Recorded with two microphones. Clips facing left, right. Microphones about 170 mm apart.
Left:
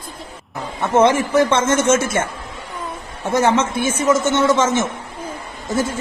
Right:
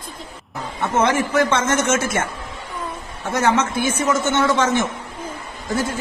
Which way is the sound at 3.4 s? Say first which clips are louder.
Left 1 dB; 25° left (ahead or behind).